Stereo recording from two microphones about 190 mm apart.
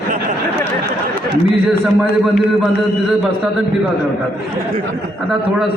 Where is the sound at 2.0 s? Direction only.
Centre (ahead or behind).